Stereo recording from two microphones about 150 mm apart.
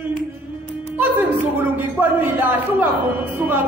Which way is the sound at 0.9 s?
10° right (ahead or behind).